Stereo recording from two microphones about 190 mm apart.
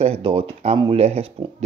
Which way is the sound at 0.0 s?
30° right (ahead or behind).